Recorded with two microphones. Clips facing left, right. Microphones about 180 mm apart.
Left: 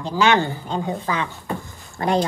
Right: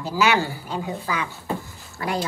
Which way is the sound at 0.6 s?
25° left (ahead or behind).